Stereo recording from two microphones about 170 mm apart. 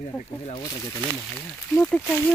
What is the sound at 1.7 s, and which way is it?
Speech, 10° left (ahead or behind).